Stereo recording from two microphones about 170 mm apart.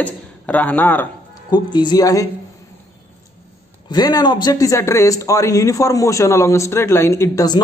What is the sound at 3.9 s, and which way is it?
A man's voice, 20° left (ahead or behind).